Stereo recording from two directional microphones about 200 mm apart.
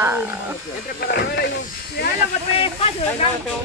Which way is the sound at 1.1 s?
55° left (ahead or behind).